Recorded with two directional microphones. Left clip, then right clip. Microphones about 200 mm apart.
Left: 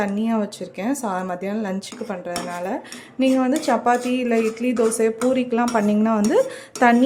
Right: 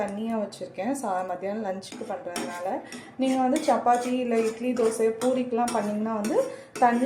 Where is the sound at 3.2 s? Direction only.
35° left (ahead or behind).